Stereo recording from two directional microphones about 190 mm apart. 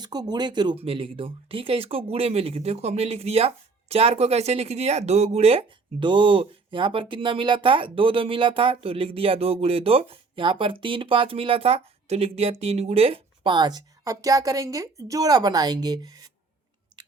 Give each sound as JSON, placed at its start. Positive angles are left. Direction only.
{"t": 0.0, "sound": "speech", "side_deg": -20}